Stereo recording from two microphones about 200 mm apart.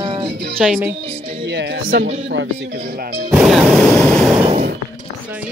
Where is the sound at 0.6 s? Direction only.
5° right (ahead or behind).